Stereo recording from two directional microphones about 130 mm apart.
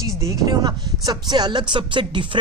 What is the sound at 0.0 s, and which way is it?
Speech, 25° right (ahead or behind).